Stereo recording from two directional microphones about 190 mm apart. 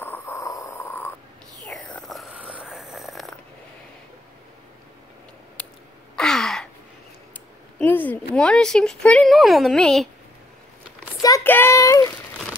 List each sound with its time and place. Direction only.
0.0 s a sound: 10° left (ahead or behind)
1.6 s whispering: centre (ahead or behind)
5.6 s a sound: 10° left (ahead or behind)
6.1 s gasp: 5° left (ahead or behind)
7.8 s speech: 10° left (ahead or behind)
11.1 s child singing: 15° left (ahead or behind)